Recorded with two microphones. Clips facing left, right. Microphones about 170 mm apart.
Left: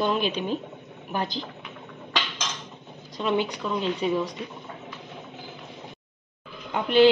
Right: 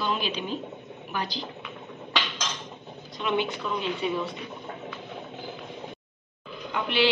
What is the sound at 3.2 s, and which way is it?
Speech, 35° left (ahead or behind).